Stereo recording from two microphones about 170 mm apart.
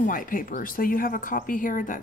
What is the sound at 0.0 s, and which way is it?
A man's voice, 55° left (ahead or behind).